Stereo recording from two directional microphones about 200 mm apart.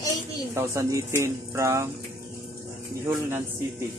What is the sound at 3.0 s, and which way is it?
Speech, 10° right (ahead or behind).